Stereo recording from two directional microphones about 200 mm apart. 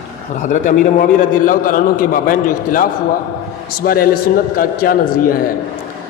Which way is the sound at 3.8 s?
45° left (ahead or behind).